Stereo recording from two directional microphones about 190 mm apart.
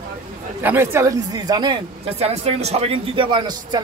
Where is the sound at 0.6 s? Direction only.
10° right (ahead or behind).